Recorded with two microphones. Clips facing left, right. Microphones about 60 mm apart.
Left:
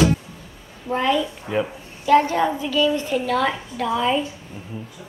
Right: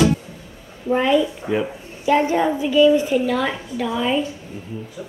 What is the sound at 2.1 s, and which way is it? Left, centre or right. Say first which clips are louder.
A woman's voice: left 1 dB; centre.